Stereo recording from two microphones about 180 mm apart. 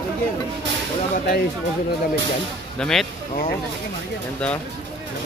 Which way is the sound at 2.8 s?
Centre (ahead or behind).